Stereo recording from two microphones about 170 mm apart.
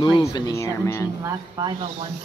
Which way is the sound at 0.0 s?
20° left (ahead or behind).